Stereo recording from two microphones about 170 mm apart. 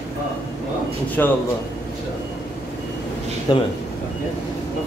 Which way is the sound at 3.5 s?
25° left (ahead or behind).